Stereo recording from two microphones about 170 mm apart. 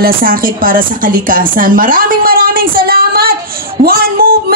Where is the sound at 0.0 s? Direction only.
55° right (ahead or behind).